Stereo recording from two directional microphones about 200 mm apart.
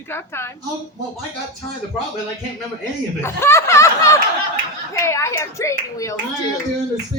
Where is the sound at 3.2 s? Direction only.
10° left (ahead or behind).